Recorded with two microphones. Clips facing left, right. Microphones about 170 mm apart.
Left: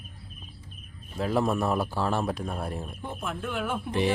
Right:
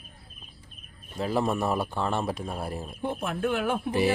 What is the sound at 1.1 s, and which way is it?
A man's voice, centre (ahead or behind).